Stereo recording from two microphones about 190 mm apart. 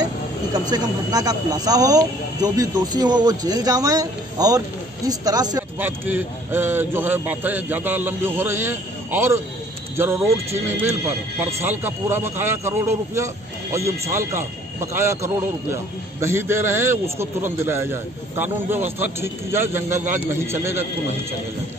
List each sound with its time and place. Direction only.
0.7 s speech: 20° right (ahead or behind)
5.8 s a man's voice: 10° right (ahead or behind)
19.1 s a man's voice: 10° right (ahead or behind)